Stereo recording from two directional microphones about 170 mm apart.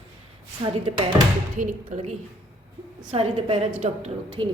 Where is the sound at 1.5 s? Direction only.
50° right (ahead or behind); by 4.5 s 35° right (ahead or behind).